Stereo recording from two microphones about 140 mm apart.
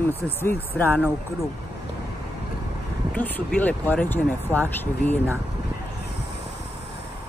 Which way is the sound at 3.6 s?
10° left (ahead or behind).